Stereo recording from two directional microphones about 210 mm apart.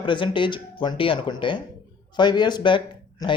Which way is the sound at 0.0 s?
25° left (ahead or behind).